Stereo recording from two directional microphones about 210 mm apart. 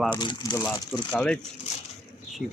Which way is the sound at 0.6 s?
5° left (ahead or behind).